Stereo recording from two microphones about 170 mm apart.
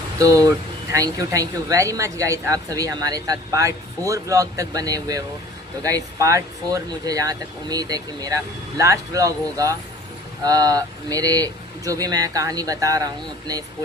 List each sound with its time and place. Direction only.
0.2 s a woman's voice: 20° right (ahead or behind)